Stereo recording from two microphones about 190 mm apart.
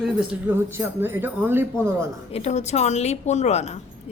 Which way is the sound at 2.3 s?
35° left (ahead or behind).